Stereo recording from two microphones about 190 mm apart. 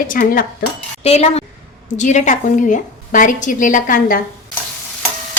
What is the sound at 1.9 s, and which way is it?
A woman's voice, 40° left (ahead or behind).